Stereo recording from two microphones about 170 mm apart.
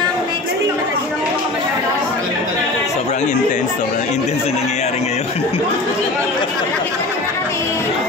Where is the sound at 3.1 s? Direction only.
45° left (ahead or behind).